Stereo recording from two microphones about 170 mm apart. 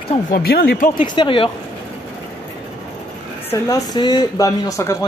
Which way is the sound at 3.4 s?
20° left (ahead or behind).